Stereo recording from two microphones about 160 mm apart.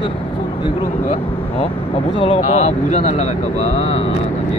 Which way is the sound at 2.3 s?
45° left (ahead or behind).